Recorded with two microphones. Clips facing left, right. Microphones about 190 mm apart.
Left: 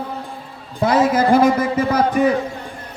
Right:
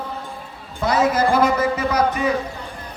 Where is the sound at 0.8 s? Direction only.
55° left (ahead or behind).